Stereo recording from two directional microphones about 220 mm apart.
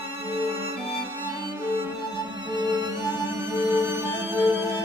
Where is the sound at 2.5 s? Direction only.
20° right (ahead or behind).